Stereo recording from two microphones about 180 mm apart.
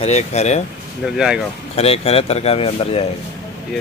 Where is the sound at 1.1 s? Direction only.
5° right (ahead or behind).